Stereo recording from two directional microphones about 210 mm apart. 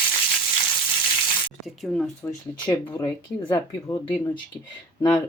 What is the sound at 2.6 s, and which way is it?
Speech, 20° left (ahead or behind).